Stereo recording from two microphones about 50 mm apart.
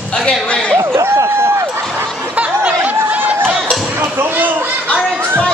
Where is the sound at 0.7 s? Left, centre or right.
Right.